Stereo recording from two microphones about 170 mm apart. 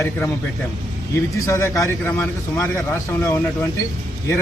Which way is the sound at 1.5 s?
15° left (ahead or behind).